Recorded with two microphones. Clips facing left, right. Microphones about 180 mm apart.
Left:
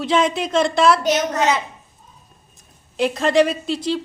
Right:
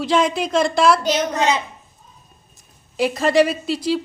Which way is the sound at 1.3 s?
20° right (ahead or behind).